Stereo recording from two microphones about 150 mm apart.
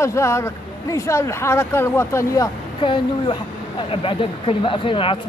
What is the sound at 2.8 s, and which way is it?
Speech, 35° left (ahead or behind).